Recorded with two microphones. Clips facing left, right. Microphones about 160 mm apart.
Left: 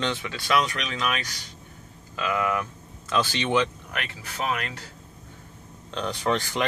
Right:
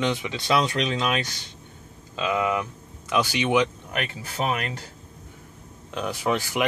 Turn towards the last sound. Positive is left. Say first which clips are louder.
# right 1 dB
turn(degrees=-10)  # may be behind; listen again after turning